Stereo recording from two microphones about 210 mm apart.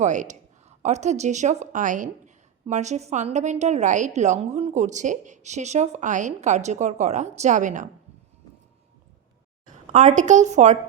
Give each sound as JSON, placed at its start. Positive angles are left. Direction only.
{"t": 0.0, "sound": "a woman's voice", "side_deg": -35}
{"t": 9.9, "sound": "a woman's voice", "side_deg": -35}